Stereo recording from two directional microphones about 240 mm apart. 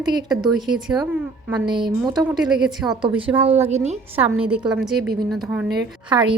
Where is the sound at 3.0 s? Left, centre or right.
Right.